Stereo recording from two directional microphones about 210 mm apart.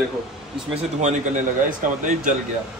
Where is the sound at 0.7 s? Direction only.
35° right (ahead or behind).